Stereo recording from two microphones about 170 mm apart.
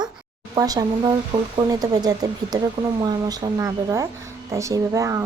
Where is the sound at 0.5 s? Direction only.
20° right (ahead or behind).